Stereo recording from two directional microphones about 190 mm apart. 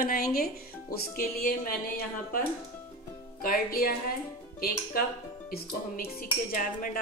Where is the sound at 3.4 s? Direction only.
50° left (ahead or behind).